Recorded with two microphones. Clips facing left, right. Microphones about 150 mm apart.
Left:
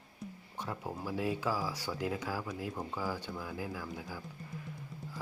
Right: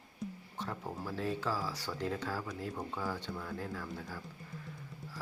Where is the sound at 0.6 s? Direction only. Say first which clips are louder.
Left 1 dB; 10° left (ahead or behind).